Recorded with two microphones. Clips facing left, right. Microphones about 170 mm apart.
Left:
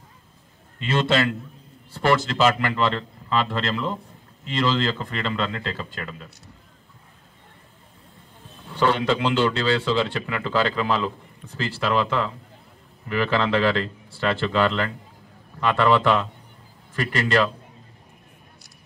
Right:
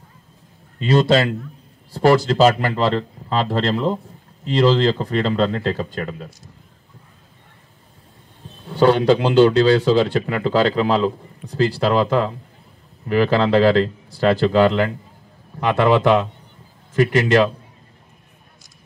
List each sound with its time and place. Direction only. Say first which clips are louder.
0.7 s speech: right 6 dB; 40° right (ahead or behind)
8.7 s speech: right 7 dB; 40° right (ahead or behind)
15.6 s a man's voice: right 4 dB; 15° right (ahead or behind)